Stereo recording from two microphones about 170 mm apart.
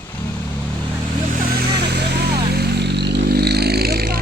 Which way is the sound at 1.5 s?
75° right (ahead or behind).